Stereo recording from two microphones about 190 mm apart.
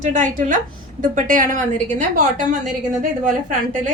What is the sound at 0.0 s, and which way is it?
A woman's voice, 40° right (ahead or behind).